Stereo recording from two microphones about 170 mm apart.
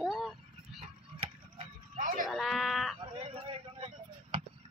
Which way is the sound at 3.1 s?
35° right (ahead or behind).